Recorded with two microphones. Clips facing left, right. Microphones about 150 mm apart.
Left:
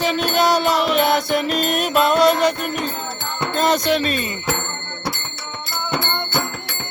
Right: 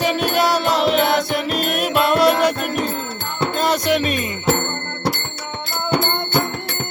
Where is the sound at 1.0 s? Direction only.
Centre (ahead or behind).